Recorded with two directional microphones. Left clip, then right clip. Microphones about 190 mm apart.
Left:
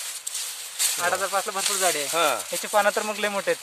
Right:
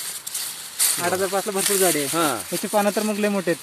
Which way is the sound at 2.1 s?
40° left (ahead or behind).